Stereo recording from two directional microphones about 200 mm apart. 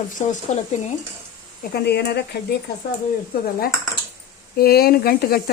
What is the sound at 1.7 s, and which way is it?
Speech, 55° left (ahead or behind).